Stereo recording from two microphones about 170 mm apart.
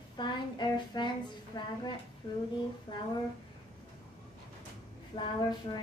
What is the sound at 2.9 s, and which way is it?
Speech, 25° left (ahead or behind).